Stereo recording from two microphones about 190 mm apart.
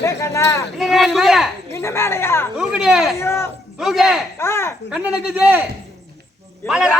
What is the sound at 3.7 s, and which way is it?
Speech, centre (ahead or behind).